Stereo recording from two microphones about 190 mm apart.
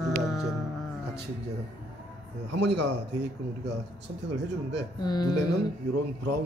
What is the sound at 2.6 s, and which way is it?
Speech, 65° right (ahead or behind).